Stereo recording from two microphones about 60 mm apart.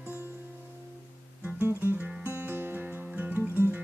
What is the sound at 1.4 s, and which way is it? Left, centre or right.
Music, right.